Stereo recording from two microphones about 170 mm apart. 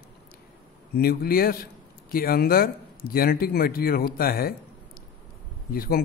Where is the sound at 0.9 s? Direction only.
60° left (ahead or behind).